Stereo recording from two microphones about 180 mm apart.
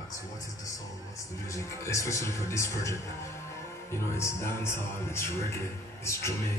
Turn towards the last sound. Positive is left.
turn(degrees=15)  # may be behind; listen again after turning